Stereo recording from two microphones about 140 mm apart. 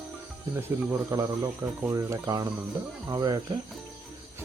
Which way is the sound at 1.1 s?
25° right (ahead or behind).